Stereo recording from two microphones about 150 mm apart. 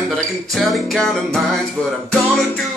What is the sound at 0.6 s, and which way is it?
Music, centre (ahead or behind).